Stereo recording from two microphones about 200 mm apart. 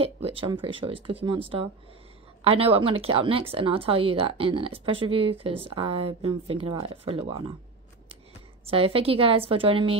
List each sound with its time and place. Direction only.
0.0 s a woman's voice: 30° right (ahead or behind)
8.6 s a woman's voice: 30° right (ahead or behind)